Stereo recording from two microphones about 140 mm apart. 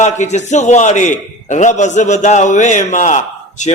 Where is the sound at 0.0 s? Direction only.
55° left (ahead or behind).